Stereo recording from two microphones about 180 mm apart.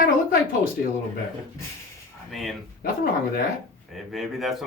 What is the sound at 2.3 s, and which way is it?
Speech, centre (ahead or behind).